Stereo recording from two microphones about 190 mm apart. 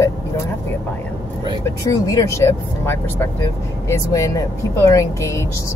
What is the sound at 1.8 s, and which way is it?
Speech, 15° left (ahead or behind).